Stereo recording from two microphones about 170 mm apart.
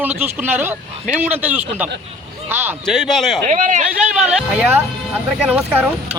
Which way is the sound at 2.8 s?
Centre (ahead or behind).